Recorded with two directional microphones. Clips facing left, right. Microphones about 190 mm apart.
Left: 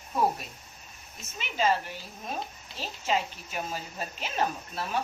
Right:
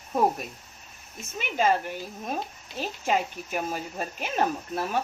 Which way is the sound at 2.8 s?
50° right (ahead or behind).